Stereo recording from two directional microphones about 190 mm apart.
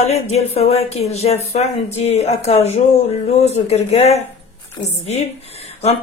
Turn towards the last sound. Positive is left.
turn(degrees=35)  # may be behind; listen again after turning